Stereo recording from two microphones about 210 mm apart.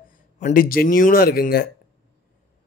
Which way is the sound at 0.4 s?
40° left (ahead or behind).